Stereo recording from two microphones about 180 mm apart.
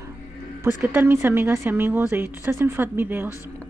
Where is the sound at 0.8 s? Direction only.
10° right (ahead or behind).